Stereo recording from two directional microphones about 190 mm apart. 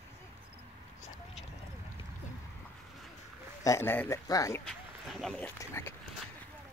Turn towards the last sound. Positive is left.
turn(degrees=15)  # may be behind; listen again after turning